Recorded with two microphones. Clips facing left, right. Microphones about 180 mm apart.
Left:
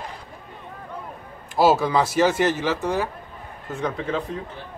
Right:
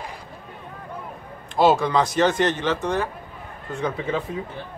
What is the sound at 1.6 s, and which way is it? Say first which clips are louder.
Speech: even; 5° left (ahead or behind).